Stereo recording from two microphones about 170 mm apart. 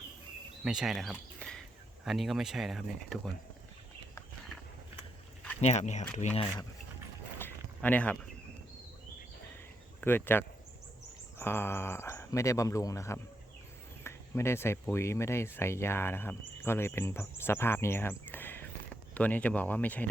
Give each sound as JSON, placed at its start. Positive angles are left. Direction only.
{"t": 0.6, "sound": "speech", "side_deg": -5}
{"t": 5.5, "sound": "speech", "side_deg": 40}
{"t": 7.3, "sound": "a sound", "side_deg": 10}
{"t": 10.0, "sound": "speech", "side_deg": 10}